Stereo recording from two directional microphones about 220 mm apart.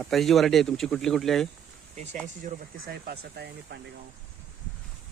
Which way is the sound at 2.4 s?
45° right (ahead or behind).